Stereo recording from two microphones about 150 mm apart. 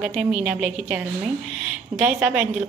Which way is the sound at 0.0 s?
5° right (ahead or behind).